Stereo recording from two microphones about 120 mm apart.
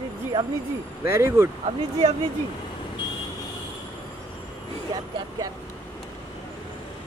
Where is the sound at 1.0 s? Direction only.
20° right (ahead or behind).